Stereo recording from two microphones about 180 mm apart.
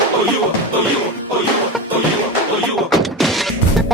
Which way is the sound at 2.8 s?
Centre (ahead or behind).